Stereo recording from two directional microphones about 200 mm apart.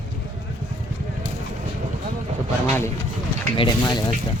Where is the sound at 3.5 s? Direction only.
25° left (ahead or behind).